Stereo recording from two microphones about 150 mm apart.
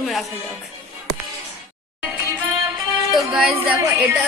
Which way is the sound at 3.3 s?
5° right (ahead or behind).